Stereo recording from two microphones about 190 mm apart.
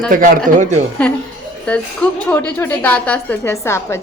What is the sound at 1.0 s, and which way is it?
A woman's voice, 5° left (ahead or behind).